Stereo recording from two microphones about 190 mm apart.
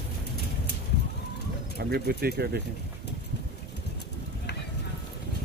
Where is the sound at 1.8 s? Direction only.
55° right (ahead or behind).